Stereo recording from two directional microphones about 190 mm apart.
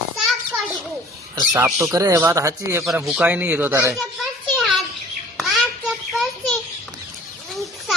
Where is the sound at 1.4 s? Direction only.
15° right (ahead or behind).